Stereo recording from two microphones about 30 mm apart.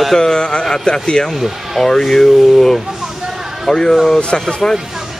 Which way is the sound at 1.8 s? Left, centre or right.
Centre.